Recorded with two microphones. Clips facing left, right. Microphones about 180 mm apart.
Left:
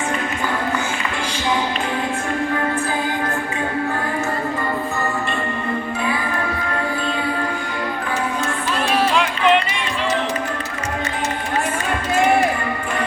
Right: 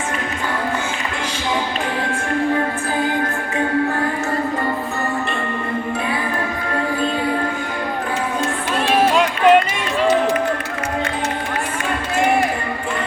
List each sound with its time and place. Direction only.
9.1 s run: 45° right (ahead or behind)